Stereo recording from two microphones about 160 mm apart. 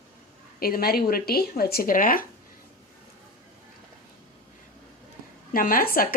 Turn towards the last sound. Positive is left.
turn(degrees=65)  # may be behind; listen again after turning